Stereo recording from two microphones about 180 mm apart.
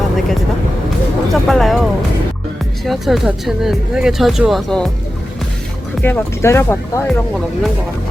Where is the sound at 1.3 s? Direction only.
Centre (ahead or behind).